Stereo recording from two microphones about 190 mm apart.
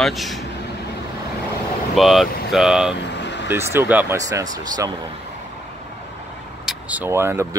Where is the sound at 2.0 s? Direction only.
Centre (ahead or behind).